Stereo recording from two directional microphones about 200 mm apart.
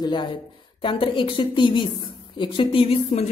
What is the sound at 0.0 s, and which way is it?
A woman's voice, 25° left (ahead or behind).